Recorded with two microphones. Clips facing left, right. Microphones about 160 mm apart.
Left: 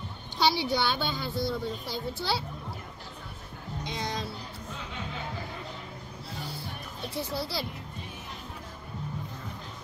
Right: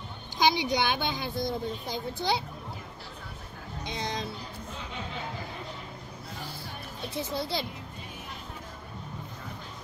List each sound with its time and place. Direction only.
0.4 s a woman's voice: 20° right (ahead or behind)
3.8 s speech: 20° right (ahead or behind)
7.2 s speech: 20° right (ahead or behind)